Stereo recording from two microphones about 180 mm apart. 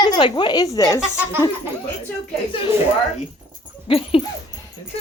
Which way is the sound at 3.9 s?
30° left (ahead or behind).